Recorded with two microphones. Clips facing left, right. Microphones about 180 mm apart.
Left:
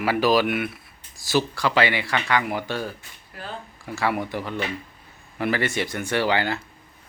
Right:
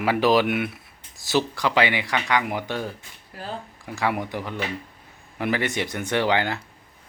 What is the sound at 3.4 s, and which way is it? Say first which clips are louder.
Speech: right 2 dB; 35° right (ahead or behind).